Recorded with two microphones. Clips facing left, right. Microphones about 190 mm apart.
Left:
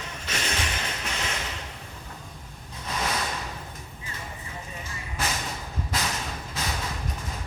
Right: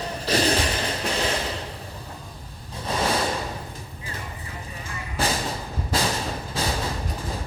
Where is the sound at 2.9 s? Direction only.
30° right (ahead or behind).